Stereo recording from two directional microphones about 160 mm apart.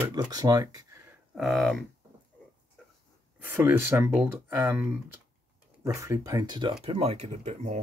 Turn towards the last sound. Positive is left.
turn(degrees=-45)  # may be behind; listen again after turning